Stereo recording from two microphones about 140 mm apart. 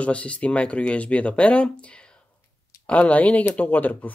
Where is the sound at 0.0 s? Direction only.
10° left (ahead or behind).